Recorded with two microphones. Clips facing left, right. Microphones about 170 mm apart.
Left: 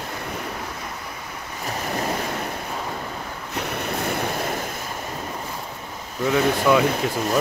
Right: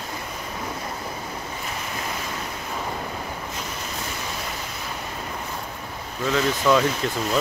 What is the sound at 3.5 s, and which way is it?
Waves, 65° left (ahead or behind).